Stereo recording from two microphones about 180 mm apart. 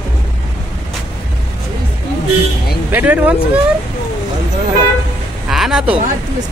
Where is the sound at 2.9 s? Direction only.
10° right (ahead or behind).